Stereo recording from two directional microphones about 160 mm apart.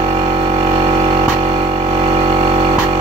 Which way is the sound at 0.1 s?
40° right (ahead or behind).